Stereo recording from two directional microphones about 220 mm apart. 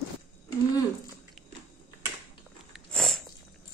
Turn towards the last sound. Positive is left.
turn(degrees=5)  # may be behind; listen again after turning